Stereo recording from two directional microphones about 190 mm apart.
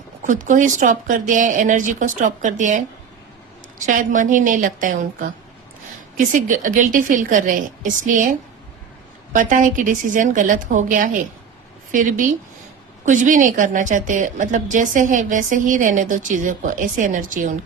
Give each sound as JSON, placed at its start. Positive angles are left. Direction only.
{"t": 0.3, "sound": "a woman's voice", "side_deg": -45}
{"t": 6.1, "sound": "a woman's voice", "side_deg": -45}